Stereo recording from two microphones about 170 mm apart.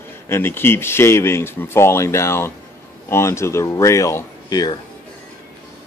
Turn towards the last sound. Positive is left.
turn(degrees=25)  # may be behind; listen again after turning